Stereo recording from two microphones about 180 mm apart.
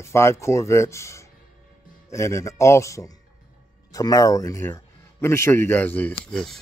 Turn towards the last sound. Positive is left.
turn(degrees=5)  # may be behind; listen again after turning